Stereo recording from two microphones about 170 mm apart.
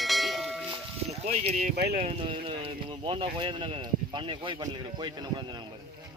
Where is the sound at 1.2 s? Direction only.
40° right (ahead or behind).